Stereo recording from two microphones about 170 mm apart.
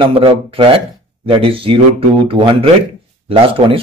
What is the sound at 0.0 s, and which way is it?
A man's voice, 35° right (ahead or behind).